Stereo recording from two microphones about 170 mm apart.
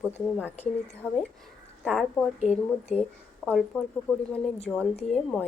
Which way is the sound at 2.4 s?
40° left (ahead or behind).